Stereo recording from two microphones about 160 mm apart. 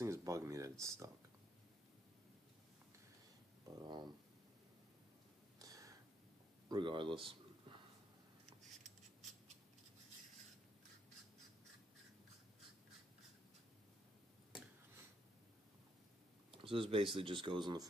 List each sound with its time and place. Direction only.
0.0 s a sound: 20° right (ahead or behind)
3.6 s speech: 25° right (ahead or behind)
5.6 s a sound: 20° right (ahead or behind)
6.7 s speech: 30° right (ahead or behind)
8.6 s scissors: centre (ahead or behind)
16.6 s speech: 35° right (ahead or behind)